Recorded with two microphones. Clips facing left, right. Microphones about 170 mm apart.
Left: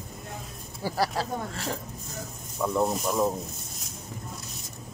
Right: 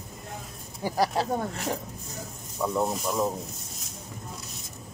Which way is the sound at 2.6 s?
Centre (ahead or behind).